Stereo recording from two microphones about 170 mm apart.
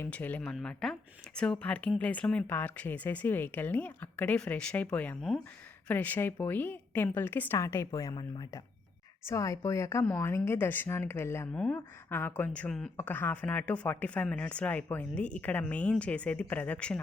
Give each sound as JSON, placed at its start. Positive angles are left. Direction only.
{"t": 0.0, "sound": "a woman's voice", "side_deg": 10}